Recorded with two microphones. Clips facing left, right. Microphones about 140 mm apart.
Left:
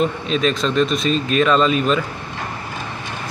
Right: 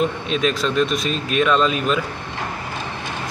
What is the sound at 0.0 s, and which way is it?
Speech, 5° right (ahead or behind).